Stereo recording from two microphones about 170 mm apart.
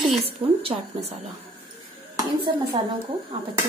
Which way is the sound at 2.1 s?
20° right (ahead or behind).